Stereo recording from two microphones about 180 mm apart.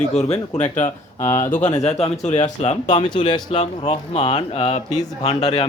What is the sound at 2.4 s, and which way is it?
Speech, 35° left (ahead or behind).